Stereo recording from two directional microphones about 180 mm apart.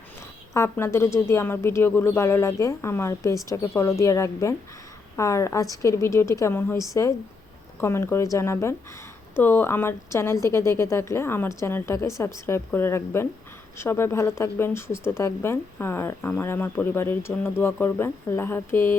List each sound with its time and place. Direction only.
0.2 s speech: 15° left (ahead or behind)